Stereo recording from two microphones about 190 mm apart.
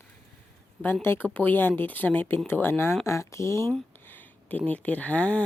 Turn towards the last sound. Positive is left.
turn(degrees=5)  # may be behind; listen again after turning